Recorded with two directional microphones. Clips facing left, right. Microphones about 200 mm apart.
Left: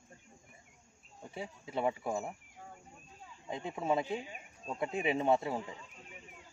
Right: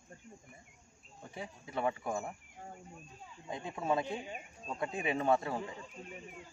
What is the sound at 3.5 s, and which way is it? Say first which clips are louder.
Speech: left 1 dB; 25° left (ahead or behind).